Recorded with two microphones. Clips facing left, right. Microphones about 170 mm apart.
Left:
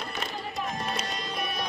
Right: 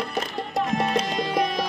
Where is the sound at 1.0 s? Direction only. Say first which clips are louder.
Right 10 dB; 90° right.